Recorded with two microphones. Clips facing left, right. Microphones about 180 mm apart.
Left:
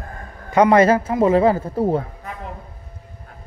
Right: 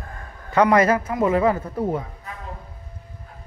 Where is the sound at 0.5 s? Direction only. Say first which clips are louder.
Left 3 dB; 25° left (ahead or behind).